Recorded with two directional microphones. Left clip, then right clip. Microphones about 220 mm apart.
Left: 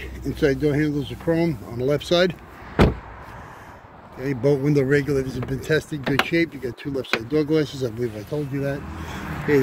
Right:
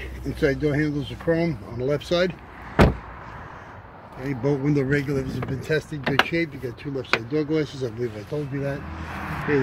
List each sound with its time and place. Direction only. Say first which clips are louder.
0.3 s speech: left 2 dB; 5° left (ahead or behind)
1.9 s speech: left 3 dB; 25° left (ahead or behind)
4.2 s speech: left 4 dB; 25° left (ahead or behind)
8.3 s speech: left 2 dB; 5° left (ahead or behind)